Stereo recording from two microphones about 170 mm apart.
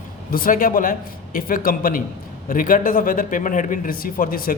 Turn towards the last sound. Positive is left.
turn(degrees=55)  # may be behind; listen again after turning